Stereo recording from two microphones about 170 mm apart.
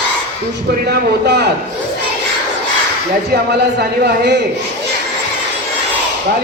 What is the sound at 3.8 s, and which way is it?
Speech, 80° right.